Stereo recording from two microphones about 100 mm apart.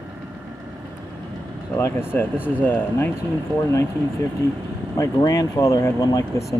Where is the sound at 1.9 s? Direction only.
25° left (ahead or behind).